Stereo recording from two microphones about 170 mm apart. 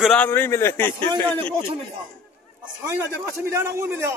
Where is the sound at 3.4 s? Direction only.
15° right (ahead or behind).